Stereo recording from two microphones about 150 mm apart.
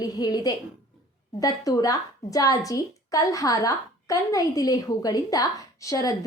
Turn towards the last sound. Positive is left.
turn(degrees=20)  # may be behind; listen again after turning